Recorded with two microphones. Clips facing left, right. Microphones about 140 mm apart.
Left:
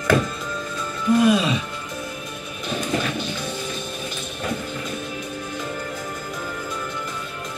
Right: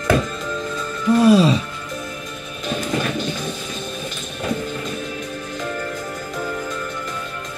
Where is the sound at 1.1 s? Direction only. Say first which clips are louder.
Right 5 dB; 35° right (ahead or behind).